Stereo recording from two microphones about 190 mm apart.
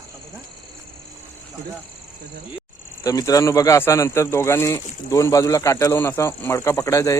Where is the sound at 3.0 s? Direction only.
20° left (ahead or behind).